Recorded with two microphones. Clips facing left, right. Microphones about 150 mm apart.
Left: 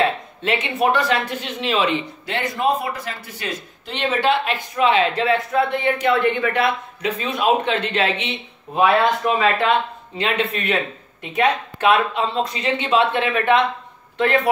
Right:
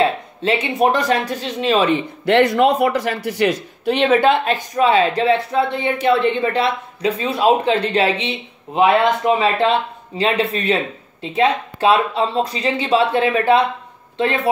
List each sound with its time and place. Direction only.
0.0 s speech: 35° right (ahead or behind)
2.2 s speech: 70° right (ahead or behind); by 14.5 s 30° right (ahead or behind)